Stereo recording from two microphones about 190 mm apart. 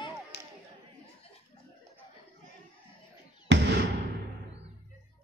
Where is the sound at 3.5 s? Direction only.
65° right (ahead or behind).